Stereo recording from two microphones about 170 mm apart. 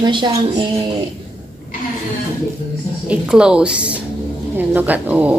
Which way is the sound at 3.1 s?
5° right (ahead or behind).